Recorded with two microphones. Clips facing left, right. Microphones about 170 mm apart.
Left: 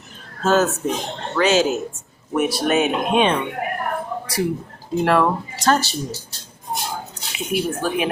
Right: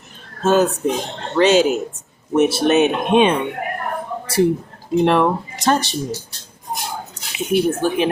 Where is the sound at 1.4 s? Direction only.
25° right (ahead or behind).